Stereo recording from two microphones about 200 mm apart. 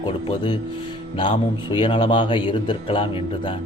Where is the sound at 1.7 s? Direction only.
25° left (ahead or behind).